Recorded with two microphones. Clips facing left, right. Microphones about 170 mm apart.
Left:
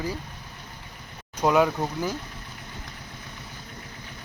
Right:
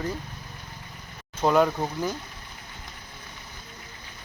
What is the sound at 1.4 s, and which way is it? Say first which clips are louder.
Speech: even; 5° left (ahead or behind).